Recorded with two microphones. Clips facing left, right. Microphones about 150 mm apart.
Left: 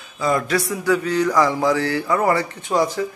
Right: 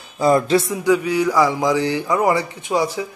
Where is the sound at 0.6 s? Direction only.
20° right (ahead or behind).